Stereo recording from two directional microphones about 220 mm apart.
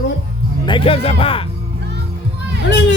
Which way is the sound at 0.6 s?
20° left (ahead or behind).